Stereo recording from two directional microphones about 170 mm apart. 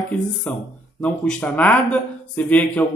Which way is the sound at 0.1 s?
10° left (ahead or behind).